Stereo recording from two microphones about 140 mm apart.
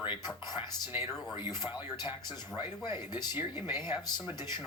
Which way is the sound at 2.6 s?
15° right (ahead or behind).